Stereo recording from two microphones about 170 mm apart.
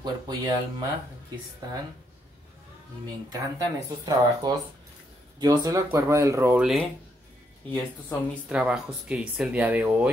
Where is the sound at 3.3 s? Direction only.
20° right (ahead or behind).